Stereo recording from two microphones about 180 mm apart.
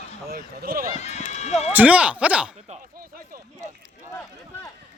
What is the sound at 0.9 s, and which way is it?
Speech, 40° left (ahead or behind).